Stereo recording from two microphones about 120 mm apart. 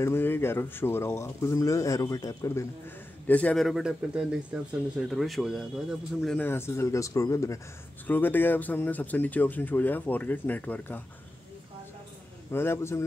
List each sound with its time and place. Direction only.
0.0 s speech: 20° left (ahead or behind)
3.3 s speech: 10° left (ahead or behind)
3.6 s a man's voice: 5° right (ahead or behind)
6.3 s speech: 15° left (ahead or behind)
12.5 s speech: 20° left (ahead or behind)